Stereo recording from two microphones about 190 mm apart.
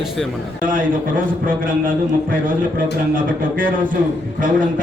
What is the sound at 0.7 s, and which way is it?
Speech, 45° right (ahead or behind).